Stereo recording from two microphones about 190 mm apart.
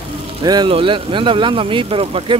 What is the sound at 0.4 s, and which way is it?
Speech, 20° right (ahead or behind).